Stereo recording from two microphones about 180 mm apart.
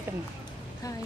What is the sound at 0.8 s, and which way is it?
Speech, 20° left (ahead or behind).